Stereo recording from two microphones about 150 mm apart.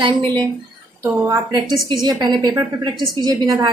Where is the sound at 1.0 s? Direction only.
15° right (ahead or behind).